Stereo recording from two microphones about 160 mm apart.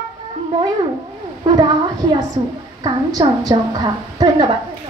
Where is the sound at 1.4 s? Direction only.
30° right (ahead or behind).